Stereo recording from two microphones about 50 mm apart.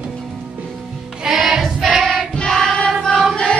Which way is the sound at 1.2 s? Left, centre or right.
Centre.